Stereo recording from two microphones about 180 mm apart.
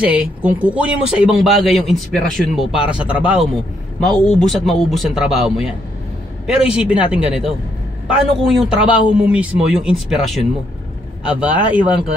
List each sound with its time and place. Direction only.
0.0 s speech: 10° right (ahead or behind)
11.4 s speech: 10° right (ahead or behind)